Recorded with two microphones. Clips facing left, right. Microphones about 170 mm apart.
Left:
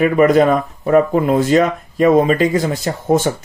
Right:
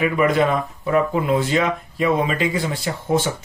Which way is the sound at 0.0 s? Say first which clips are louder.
Left 6 dB; 45° left (ahead or behind).